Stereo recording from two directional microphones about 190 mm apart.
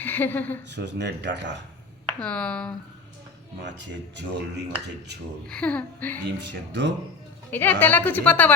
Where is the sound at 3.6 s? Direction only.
70° right (ahead or behind).